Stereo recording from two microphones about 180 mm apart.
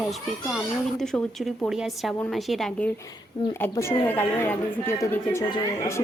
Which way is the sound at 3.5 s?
15° left (ahead or behind).